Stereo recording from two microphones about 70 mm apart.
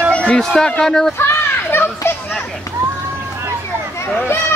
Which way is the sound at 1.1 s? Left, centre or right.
Left.